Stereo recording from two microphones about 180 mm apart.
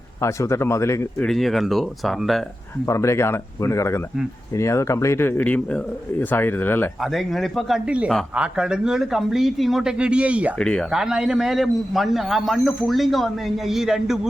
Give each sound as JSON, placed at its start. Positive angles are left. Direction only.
{"t": 0.2, "sound": "a man's voice", "side_deg": 15}
{"t": 1.3, "sound": "a man's voice", "side_deg": 0}
{"t": 2.8, "sound": "a man's voice", "side_deg": 15}
{"t": 7.0, "sound": "a man's voice", "side_deg": 0}
{"t": 10.6, "sound": "a man's voice", "side_deg": 5}